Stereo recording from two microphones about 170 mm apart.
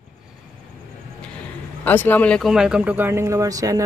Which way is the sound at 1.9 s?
10° left (ahead or behind).